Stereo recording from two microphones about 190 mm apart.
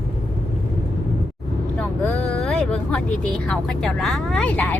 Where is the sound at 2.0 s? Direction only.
10° left (ahead or behind).